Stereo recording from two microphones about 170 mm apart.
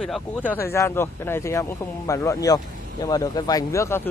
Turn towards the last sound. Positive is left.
turn(degrees=15)  # may be behind; listen again after turning